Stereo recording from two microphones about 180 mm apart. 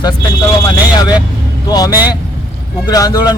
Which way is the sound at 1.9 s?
10° right (ahead or behind).